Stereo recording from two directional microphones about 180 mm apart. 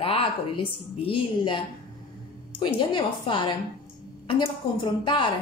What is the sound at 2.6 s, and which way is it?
A woman's voice, 25° left (ahead or behind).